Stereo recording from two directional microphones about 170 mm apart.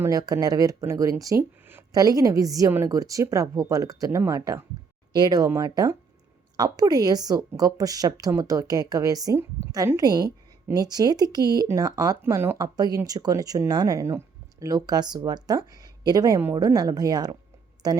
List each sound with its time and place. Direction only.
0.0 s a woman's voice: 20° right (ahead or behind)